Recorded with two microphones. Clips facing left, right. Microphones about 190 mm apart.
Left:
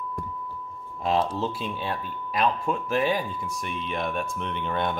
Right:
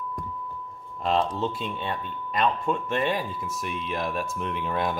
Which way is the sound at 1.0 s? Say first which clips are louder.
Even; 5° left (ahead or behind).